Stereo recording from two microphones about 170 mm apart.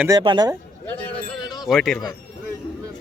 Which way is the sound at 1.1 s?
25° left (ahead or behind).